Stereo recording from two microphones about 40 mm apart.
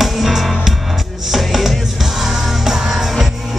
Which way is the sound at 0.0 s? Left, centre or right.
Centre.